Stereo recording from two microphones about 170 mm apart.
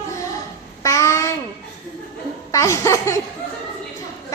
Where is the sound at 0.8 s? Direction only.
15° left (ahead or behind).